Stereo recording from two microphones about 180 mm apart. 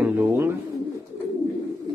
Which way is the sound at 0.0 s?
10° right (ahead or behind).